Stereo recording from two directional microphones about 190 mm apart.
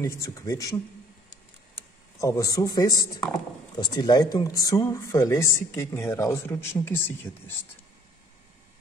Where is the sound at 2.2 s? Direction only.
15° left (ahead or behind).